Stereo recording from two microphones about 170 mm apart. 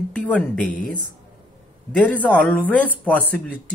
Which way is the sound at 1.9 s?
5° left (ahead or behind).